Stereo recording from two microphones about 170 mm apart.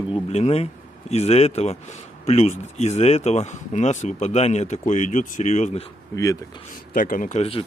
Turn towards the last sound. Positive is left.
turn(degrees=35)  # may be behind; listen again after turning